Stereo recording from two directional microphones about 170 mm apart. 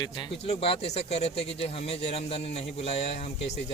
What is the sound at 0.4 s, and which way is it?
A man's voice, 35° left (ahead or behind).